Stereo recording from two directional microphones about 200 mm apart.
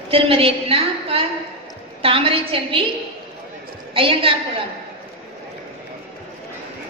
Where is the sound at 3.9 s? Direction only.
25° right (ahead or behind).